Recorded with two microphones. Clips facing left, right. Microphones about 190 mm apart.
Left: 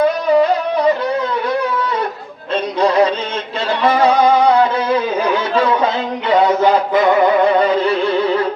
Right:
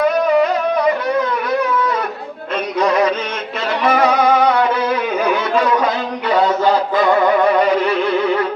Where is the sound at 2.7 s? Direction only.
30° left (ahead or behind).